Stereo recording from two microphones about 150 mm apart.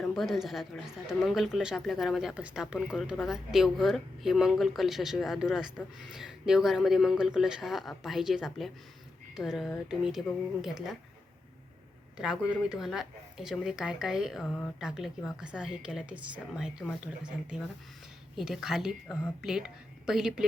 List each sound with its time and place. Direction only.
0.0 s speech: 5° left (ahead or behind)
12.1 s speech: 5° right (ahead or behind)
18.3 s a woman's voice: 5° right (ahead or behind)